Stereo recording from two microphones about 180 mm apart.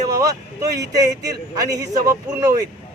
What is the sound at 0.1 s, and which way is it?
A man's voice, 20° right (ahead or behind).